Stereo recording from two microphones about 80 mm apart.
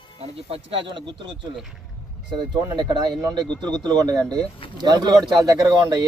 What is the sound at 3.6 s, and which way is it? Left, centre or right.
A man's voice, right.